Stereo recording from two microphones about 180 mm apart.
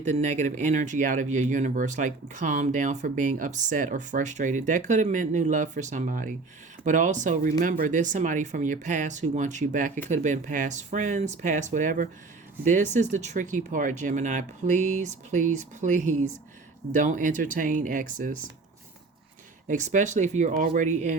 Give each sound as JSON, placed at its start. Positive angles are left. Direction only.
{"t": 0.0, "sound": "speech", "side_deg": -40}
{"t": 19.6, "sound": "speech", "side_deg": -45}